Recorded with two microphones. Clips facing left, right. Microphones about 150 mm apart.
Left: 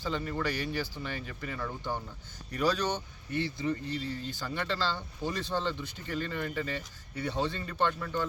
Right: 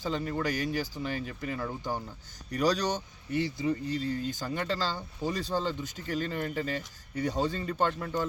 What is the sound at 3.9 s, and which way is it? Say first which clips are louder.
Speech: right 4 dB; 45° right (ahead or behind).